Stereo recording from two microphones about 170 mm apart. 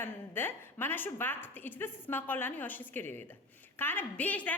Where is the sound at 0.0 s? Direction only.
15° left (ahead or behind).